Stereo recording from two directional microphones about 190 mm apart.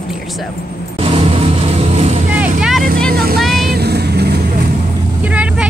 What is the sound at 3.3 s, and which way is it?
Vehicle, centre (ahead or behind).